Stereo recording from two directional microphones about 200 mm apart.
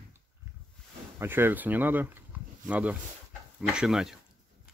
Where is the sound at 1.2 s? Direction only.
10° right (ahead or behind).